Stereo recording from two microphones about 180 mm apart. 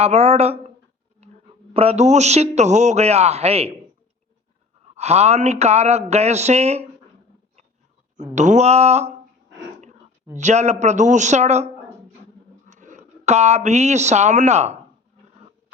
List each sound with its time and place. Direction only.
0.0 s a man's voice: 35° right (ahead or behind)
1.2 s a sound: 35° right (ahead or behind)
1.7 s a man's voice: 35° right (ahead or behind)
4.9 s a man's voice: 35° right (ahead or behind)
8.4 s a man's voice: 40° right (ahead or behind)
10.3 s a man's voice: 40° right (ahead or behind)